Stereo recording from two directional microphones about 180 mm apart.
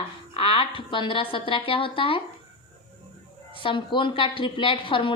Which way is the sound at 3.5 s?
30° left (ahead or behind).